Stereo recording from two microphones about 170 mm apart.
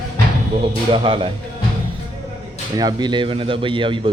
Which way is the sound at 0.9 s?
30° right (ahead or behind).